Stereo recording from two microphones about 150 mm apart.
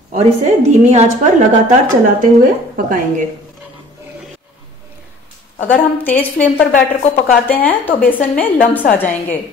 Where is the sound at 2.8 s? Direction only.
65° right (ahead or behind).